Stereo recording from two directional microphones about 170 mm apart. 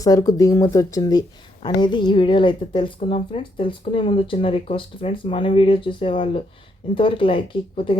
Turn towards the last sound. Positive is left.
turn(degrees=30)  # may be behind; listen again after turning